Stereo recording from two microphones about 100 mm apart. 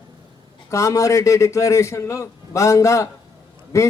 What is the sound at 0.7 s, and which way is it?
A man's voice, 30° left (ahead or behind).